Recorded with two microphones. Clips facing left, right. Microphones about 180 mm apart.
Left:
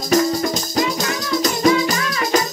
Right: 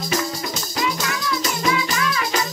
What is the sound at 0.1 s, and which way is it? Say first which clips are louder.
Music: left 10 dB; 45° left (ahead or behind).